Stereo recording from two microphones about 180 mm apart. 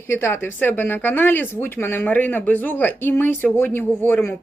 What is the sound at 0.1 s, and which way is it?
A woman's voice, 15° left (ahead or behind).